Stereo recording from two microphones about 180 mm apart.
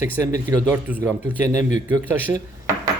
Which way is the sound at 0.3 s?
10° right (ahead or behind).